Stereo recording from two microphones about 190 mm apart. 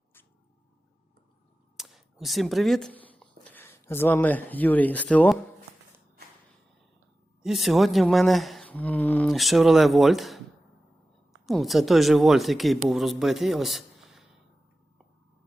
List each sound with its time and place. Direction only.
1.7 s speech: centre (ahead or behind)
7.4 s speech: centre (ahead or behind)